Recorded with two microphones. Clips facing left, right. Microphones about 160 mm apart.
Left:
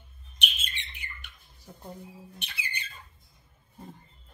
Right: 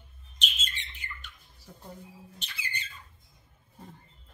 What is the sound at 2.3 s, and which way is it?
Bird, 60° left (ahead or behind).